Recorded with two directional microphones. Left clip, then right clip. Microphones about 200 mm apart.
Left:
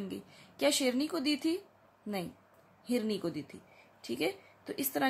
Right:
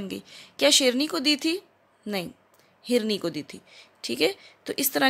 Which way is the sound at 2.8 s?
45° right (ahead or behind).